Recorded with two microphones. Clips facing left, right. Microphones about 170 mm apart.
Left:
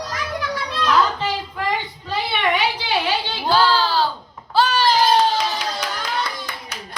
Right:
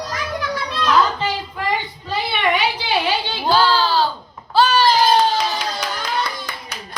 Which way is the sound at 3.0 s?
15° right (ahead or behind).